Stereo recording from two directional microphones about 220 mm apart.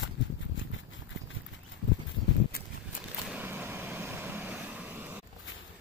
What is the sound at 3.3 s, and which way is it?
Vehicle, 10° right (ahead or behind).